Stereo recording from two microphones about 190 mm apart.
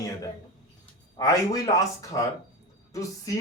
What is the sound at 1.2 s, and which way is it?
A man's voice, 20° left (ahead or behind).